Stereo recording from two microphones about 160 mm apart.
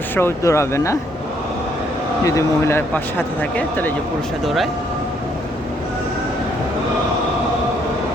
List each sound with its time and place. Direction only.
0.2 s speech: 15° left (ahead or behind)
2.2 s speech: 20° left (ahead or behind)
4.4 s speech: centre (ahead or behind)